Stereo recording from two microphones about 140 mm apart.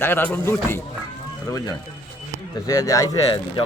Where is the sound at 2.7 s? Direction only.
25° left (ahead or behind).